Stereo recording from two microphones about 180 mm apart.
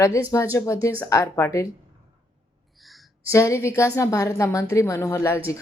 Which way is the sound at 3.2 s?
15° left (ahead or behind).